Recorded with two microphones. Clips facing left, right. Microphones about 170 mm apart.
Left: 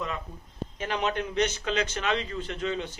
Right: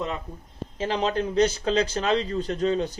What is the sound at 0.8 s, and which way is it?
A man's voice, 30° right (ahead or behind).